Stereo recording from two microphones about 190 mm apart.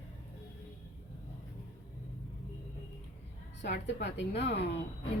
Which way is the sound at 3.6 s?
65° left (ahead or behind).